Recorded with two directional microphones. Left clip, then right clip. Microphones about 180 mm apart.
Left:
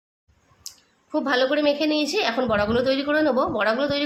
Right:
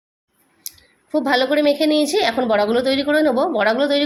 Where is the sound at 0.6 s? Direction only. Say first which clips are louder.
Right 4 dB; 20° right (ahead or behind).